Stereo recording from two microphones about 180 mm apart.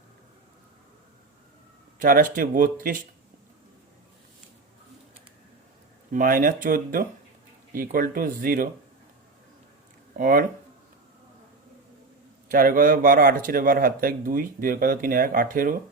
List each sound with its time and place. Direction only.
2.0 s speech: 50° right (ahead or behind)
6.1 s speech: 50° right (ahead or behind)
10.2 s speech: 50° right (ahead or behind)
12.5 s speech: 50° right (ahead or behind)